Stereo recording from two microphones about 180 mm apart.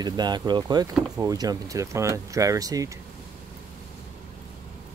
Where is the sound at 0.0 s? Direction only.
25° right (ahead or behind).